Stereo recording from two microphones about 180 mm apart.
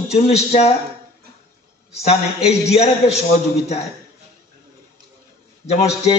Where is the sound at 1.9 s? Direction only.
35° left (ahead or behind).